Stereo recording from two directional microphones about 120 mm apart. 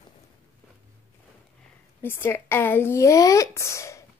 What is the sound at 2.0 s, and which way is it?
Speech, 20° left (ahead or behind).